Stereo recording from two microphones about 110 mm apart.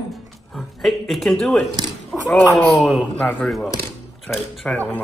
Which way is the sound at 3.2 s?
10° left (ahead or behind).